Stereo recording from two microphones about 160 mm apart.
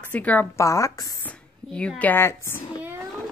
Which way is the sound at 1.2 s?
10° left (ahead or behind).